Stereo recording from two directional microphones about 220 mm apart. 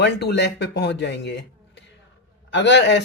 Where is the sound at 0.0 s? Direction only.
50° left (ahead or behind).